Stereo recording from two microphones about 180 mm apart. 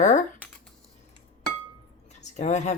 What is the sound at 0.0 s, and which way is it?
Speech, 40° left (ahead or behind).